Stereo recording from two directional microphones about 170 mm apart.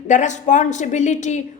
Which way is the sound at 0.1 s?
45° left (ahead or behind).